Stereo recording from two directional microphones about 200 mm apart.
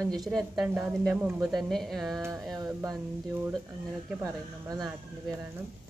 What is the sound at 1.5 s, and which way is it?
Speech, centre (ahead or behind).